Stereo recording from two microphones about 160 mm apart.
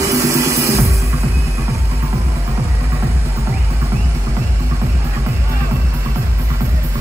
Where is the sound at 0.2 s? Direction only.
20° right (ahead or behind).